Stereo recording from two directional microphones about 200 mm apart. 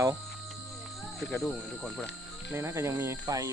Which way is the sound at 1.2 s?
Centre (ahead or behind).